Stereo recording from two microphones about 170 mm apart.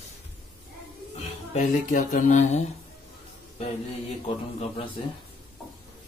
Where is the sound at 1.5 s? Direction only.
45° left (ahead or behind).